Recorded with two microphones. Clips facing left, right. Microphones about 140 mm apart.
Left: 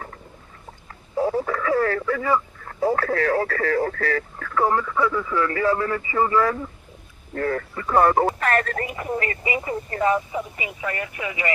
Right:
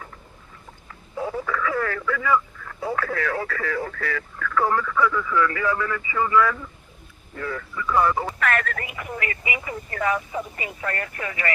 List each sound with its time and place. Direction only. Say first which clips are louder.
1.1 s speech: left 5 dB; 35° left (ahead or behind)
7.3 s speech: left 6 dB; 50° left (ahead or behind)
8.4 s speech: left 3 dB; 35° left (ahead or behind)
10.3 s speech: left 1 dB; 5° left (ahead or behind)